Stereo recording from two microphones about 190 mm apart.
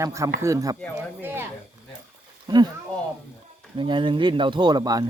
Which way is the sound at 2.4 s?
20° right (ahead or behind).